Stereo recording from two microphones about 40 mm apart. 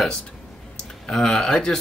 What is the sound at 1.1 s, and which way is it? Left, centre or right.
Speech, centre.